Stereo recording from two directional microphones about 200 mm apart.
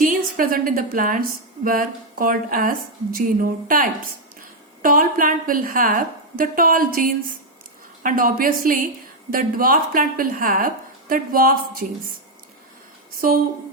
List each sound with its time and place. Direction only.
0.0 s a woman's voice: 45° right (ahead or behind)
13.2 s a woman's voice: 45° right (ahead or behind)